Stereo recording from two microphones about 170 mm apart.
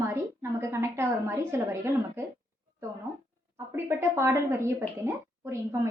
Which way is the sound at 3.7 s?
15° right (ahead or behind).